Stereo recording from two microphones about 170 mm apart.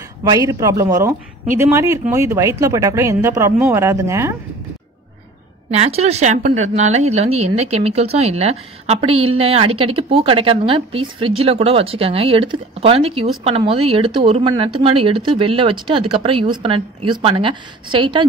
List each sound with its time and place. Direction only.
0.2 s speech: 20° right (ahead or behind)
5.7 s a woman's voice: 40° right (ahead or behind)